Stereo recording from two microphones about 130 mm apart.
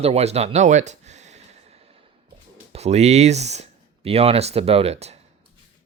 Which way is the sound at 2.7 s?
55° right (ahead or behind).